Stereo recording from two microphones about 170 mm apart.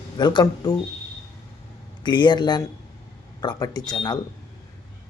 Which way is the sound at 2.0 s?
25° left (ahead or behind).